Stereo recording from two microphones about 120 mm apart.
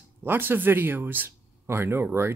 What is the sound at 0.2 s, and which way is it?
Speech, 15° right (ahead or behind).